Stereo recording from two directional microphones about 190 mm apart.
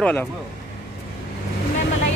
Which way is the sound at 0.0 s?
5° left (ahead or behind).